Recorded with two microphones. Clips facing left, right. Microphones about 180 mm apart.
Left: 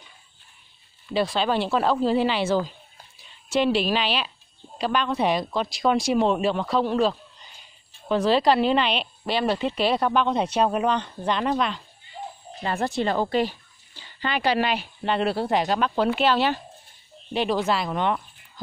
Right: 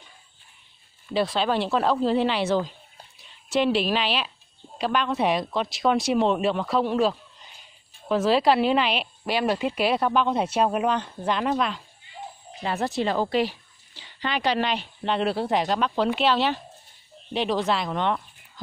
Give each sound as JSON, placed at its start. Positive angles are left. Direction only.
{"t": 1.1, "sound": "a woman's voice", "side_deg": 0}